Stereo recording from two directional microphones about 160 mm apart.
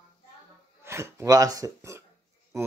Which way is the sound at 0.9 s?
15° right (ahead or behind).